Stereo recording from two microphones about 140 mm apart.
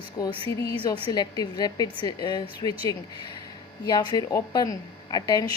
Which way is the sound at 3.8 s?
30° left (ahead or behind).